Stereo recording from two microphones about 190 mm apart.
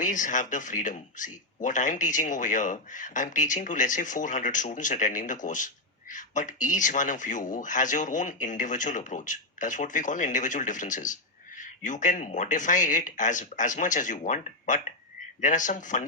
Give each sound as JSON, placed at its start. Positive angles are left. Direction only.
{"t": 0.0, "sound": "speech", "side_deg": 40}